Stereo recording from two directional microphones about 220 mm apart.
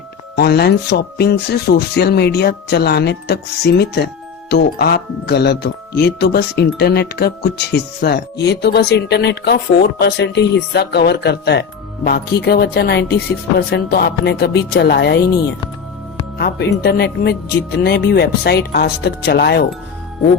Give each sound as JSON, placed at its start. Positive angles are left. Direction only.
{"t": 0.3, "sound": "speech", "side_deg": 45}
{"t": 16.4, "sound": "speech", "side_deg": 45}